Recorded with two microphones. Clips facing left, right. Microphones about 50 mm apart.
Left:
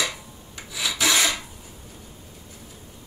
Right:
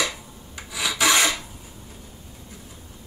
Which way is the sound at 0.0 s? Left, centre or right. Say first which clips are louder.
Right 1 dB; centre.